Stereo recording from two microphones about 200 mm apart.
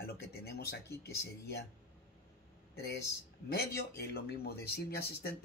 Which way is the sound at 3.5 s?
50° left (ahead or behind).